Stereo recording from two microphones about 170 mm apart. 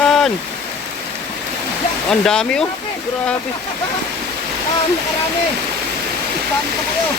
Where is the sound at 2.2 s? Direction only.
5° left (ahead or behind).